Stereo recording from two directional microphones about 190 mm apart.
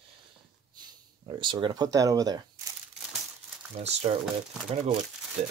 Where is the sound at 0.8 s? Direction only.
25° right (ahead or behind).